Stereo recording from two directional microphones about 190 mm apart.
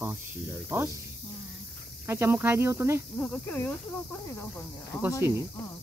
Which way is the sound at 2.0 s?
15° right (ahead or behind).